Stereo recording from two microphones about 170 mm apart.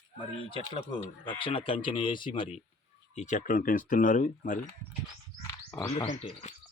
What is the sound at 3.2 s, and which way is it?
Speech, 45° left (ahead or behind).